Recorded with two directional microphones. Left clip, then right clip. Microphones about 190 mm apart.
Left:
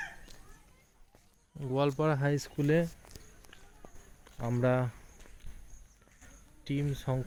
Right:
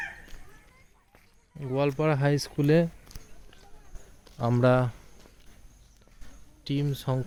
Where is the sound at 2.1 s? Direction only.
10° right (ahead or behind).